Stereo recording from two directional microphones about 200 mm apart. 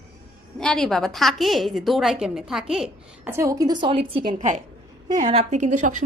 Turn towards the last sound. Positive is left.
turn(degrees=-40)  # may be behind; listen again after turning